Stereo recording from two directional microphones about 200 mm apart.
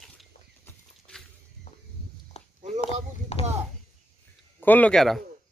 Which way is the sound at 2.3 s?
30° left (ahead or behind).